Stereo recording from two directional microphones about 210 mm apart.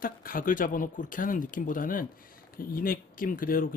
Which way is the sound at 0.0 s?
40° left (ahead or behind).